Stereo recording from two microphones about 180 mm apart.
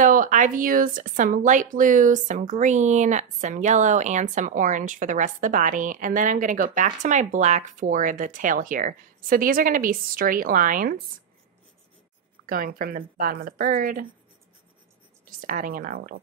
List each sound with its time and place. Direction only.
0.0 s speech: 50° right (ahead or behind)
12.4 s speech: 50° right (ahead or behind)
15.2 s speech: 50° right (ahead or behind)